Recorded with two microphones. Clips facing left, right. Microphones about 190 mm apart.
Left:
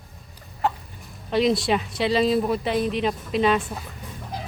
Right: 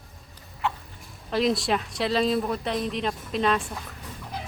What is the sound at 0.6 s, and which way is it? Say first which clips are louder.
Chicken: left 4 dB; 40° left (ahead or behind).